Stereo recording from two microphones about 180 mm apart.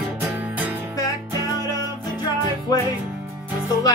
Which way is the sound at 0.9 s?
20° left (ahead or behind).